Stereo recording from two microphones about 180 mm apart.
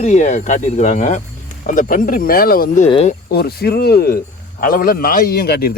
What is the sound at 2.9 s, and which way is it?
Speech, 35° left (ahead or behind).